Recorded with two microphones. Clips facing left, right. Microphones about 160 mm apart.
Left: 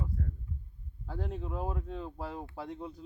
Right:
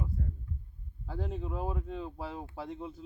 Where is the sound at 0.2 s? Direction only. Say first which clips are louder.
Even; 15° right (ahead or behind).